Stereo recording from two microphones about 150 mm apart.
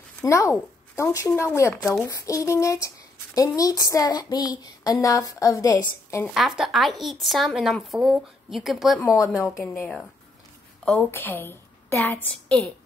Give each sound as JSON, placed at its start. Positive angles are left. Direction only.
{"t": 0.2, "sound": "speech", "side_deg": 20}
{"t": 6.2, "sound": "speech", "side_deg": 0}
{"t": 9.0, "sound": "speech", "side_deg": 20}
{"t": 10.9, "sound": "a woman's voice", "side_deg": 10}